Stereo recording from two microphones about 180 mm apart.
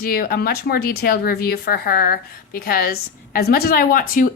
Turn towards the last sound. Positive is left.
turn(degrees=50)  # may be behind; listen again after turning